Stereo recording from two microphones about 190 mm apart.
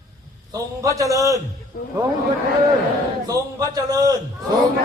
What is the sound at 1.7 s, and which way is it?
Speech, 50° left (ahead or behind).